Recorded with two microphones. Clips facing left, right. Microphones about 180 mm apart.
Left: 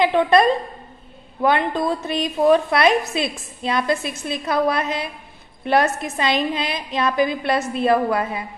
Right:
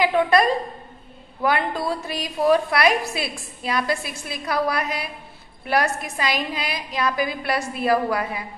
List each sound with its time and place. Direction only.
0.0 s a woman's voice: 25° left (ahead or behind)